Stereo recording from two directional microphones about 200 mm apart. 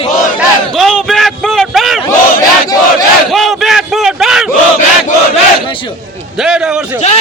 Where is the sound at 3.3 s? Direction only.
Centre (ahead or behind).